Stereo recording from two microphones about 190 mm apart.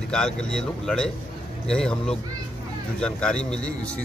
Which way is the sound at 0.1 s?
5° left (ahead or behind).